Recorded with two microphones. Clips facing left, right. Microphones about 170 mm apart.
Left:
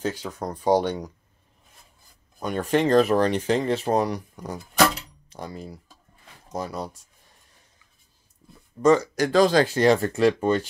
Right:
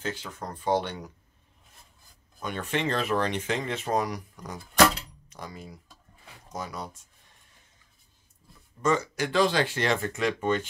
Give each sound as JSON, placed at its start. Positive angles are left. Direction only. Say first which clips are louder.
{"t": 0.2, "sound": "speech", "louder": "left 7 dB", "side_deg": 40}
{"t": 2.4, "sound": "speech", "louder": "left 7 dB", "side_deg": 40}
{"t": 8.8, "sound": "speech", "louder": "left 7 dB", "side_deg": 40}